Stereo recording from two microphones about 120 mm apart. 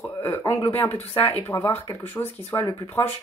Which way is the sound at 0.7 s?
15° left (ahead or behind).